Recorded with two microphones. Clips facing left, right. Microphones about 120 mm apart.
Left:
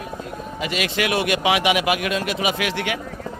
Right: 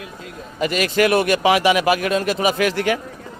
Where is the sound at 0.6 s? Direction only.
45° right (ahead or behind).